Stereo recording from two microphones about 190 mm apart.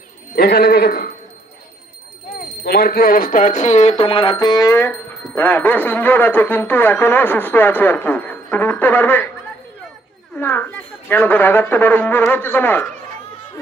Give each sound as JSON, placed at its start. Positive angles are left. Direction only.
{"t": 0.3, "sound": "a sound", "side_deg": 55}
{"t": 2.6, "sound": "speech", "side_deg": 55}
{"t": 10.3, "sound": "speech", "side_deg": 10}